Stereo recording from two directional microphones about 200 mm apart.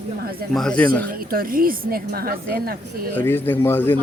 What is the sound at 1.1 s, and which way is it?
A woman's voice, 45° right (ahead or behind).